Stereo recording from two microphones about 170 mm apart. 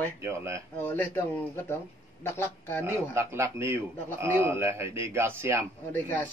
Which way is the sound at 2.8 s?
15° right (ahead or behind).